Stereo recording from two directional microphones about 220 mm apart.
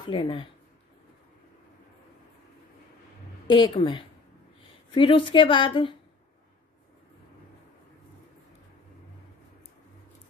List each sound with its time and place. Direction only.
0.0 s speech: 20° left (ahead or behind)
3.4 s speech: 20° left (ahead or behind)